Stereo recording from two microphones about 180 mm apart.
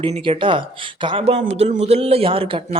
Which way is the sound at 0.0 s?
30° right (ahead or behind).